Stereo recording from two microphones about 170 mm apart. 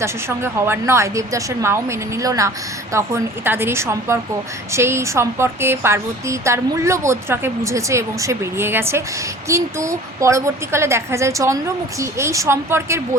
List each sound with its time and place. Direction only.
0.0 s a woman's voice: 15° right (ahead or behind)